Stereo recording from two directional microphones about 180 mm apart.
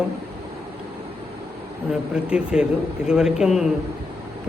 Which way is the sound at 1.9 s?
5° right (ahead or behind).